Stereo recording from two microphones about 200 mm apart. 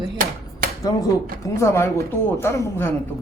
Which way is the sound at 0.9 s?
15° left (ahead or behind).